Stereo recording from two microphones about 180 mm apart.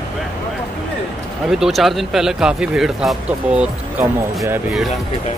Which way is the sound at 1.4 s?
Centre (ahead or behind).